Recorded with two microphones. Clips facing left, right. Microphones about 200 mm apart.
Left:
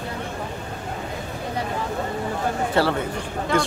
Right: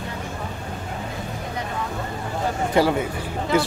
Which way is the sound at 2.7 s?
10° right (ahead or behind).